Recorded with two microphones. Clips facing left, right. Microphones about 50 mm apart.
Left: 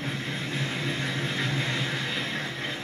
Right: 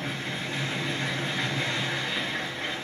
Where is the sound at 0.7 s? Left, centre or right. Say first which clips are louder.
Even; centre.